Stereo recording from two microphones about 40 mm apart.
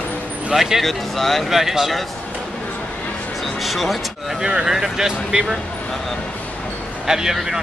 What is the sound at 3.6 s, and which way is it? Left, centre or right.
Speech, centre.